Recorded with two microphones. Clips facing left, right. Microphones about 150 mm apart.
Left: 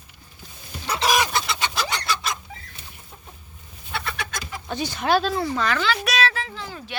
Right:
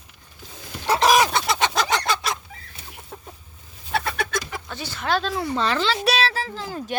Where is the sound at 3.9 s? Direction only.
45° right (ahead or behind).